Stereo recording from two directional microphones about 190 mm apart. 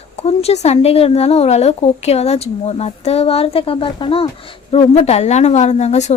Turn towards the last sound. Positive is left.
turn(degrees=35)  # may be behind; listen again after turning